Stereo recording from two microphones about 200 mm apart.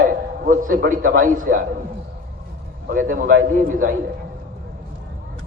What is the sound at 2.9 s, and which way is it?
A man's voice, 40° right (ahead or behind).